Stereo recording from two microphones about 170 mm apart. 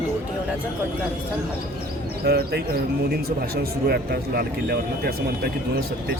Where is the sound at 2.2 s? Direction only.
65° right (ahead or behind).